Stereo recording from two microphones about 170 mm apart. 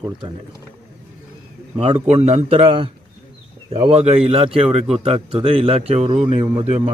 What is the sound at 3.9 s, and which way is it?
A man's voice, 35° right (ahead or behind).